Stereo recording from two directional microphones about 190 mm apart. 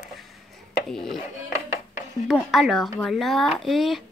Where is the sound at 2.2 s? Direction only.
Centre (ahead or behind).